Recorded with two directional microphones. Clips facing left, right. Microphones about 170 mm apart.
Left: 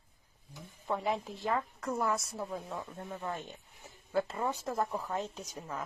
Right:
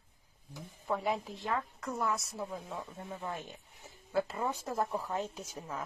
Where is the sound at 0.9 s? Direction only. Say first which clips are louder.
Even; centre (ahead or behind).